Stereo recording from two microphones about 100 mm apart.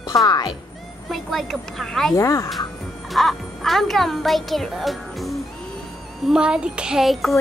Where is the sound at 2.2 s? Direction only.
30° left (ahead or behind).